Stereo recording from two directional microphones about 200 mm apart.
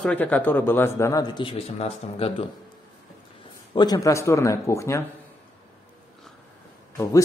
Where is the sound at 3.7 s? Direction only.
20° left (ahead or behind).